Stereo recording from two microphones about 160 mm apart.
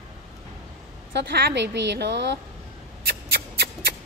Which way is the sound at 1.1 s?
90° right.